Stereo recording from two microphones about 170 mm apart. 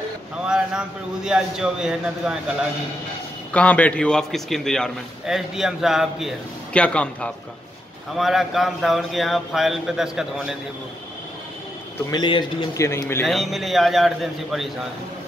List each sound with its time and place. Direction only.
0.5 s a man's voice: 5° right (ahead or behind)
3.5 s a man's voice: 10° left (ahead or behind)
12.1 s speech: 25° left (ahead or behind)
12.7 s speech: 15° left (ahead or behind)
13.3 s a man's voice: centre (ahead or behind)